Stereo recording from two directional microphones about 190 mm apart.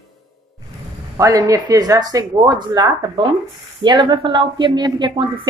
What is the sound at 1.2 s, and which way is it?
Speech, 15° right (ahead or behind).